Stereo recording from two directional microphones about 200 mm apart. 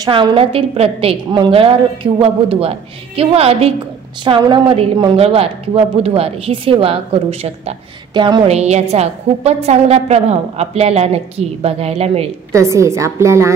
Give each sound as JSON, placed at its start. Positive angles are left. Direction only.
{"t": 0.0, "sound": "a woman's voice", "side_deg": -25}
{"t": 12.5, "sound": "a woman's voice", "side_deg": -15}